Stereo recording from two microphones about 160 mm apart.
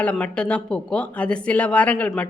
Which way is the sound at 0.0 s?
5° left (ahead or behind).